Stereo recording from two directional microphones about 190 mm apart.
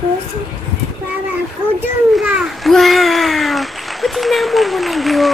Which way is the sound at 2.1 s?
5° right (ahead or behind).